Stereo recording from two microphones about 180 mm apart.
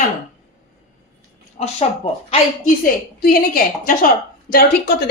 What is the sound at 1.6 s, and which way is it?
Speech, 35° left (ahead or behind).